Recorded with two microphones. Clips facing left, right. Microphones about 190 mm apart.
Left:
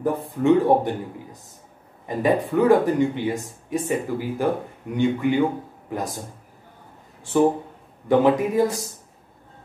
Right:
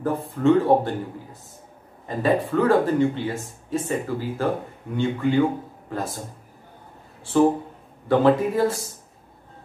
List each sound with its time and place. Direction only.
0.3 s speech: 15° left (ahead or behind)
2.0 s speech: 15° left (ahead or behind)
7.3 s speech: 15° left (ahead or behind)